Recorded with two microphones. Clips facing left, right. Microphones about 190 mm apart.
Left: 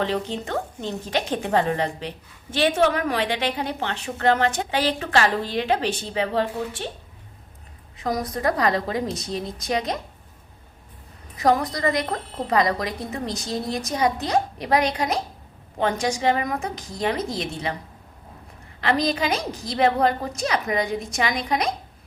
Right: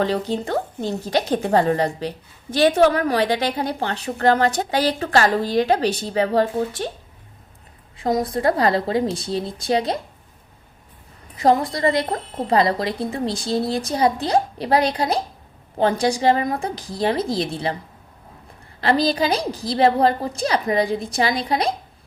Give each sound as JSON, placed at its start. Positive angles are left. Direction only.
{"t": 0.0, "sound": "a woman's voice", "side_deg": -40}
{"t": 7.9, "sound": "a woman's voice", "side_deg": -25}
{"t": 11.3, "sound": "a woman's voice", "side_deg": -25}
{"t": 18.8, "sound": "a woman's voice", "side_deg": -35}